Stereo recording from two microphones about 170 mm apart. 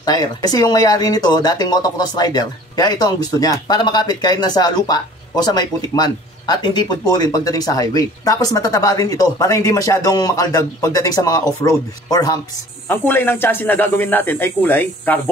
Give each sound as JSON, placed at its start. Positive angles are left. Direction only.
{"t": 0.0, "sound": "speech", "side_deg": 25}
{"t": 12.8, "sound": "speech", "side_deg": 10}